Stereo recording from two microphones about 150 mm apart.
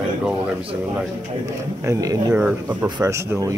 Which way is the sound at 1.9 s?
20° right (ahead or behind).